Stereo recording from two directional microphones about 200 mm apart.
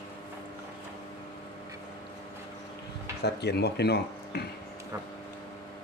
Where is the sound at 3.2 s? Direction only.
55° left (ahead or behind).